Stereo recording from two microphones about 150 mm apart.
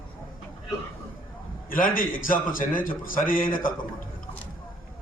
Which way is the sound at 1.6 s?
70° left (ahead or behind).